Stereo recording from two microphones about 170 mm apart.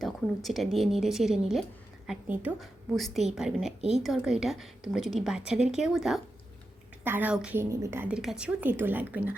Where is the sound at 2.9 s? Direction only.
Centre (ahead or behind).